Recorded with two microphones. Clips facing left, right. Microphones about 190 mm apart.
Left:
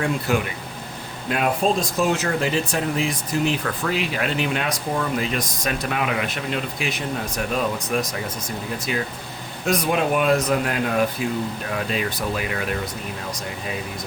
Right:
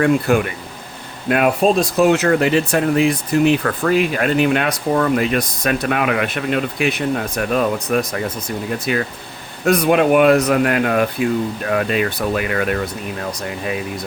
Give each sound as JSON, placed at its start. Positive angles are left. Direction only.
{"t": 0.0, "sound": "speech", "side_deg": -55}
{"t": 1.3, "sound": "speech", "side_deg": -70}